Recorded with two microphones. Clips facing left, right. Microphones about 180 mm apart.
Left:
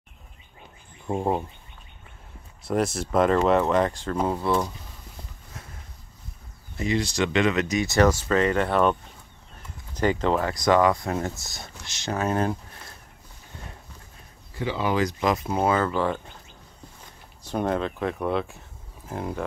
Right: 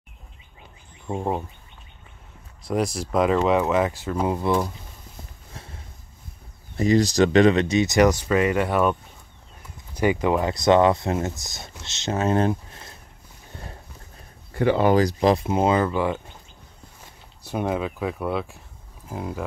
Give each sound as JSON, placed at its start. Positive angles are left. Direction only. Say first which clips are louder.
{"t": 1.0, "sound": "speech", "louder": "left 1 dB", "side_deg": 5}
{"t": 2.7, "sound": "speech", "louder": "even", "side_deg": 0}
{"t": 6.8, "sound": "speech", "louder": "right 7 dB", "side_deg": -40}
{"t": 9.9, "sound": "speech", "louder": "right 2 dB", "side_deg": -10}
{"t": 14.5, "sound": "speech", "louder": "right 8 dB", "side_deg": -55}
{"t": 15.0, "sound": "speech", "louder": "right 5 dB", "side_deg": -35}
{"t": 17.5, "sound": "speech", "louder": "even", "side_deg": -10}